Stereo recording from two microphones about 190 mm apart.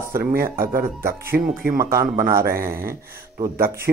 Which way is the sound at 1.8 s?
15° right (ahead or behind).